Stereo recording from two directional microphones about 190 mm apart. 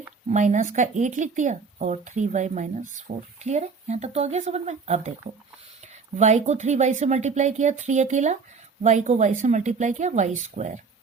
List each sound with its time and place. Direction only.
0.3 s speech: 40° right (ahead or behind)
6.1 s speech: 35° right (ahead or behind)